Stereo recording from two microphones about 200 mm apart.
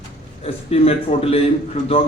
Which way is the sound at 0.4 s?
30° left (ahead or behind).